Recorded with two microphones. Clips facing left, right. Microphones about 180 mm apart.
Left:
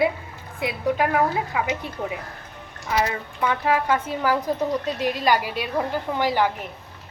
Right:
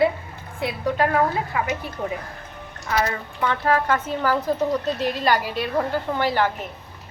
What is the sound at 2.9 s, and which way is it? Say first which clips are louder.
Speech: even; 10° left (ahead or behind).